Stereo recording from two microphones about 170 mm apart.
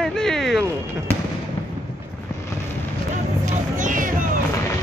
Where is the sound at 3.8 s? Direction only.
50° right (ahead or behind).